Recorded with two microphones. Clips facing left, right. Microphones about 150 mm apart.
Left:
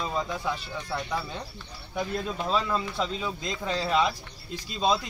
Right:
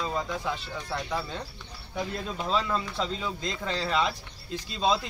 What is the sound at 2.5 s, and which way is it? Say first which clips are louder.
Speech: even; 10° left (ahead or behind).